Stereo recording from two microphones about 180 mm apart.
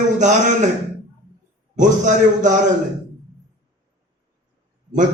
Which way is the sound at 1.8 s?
45° right (ahead or behind).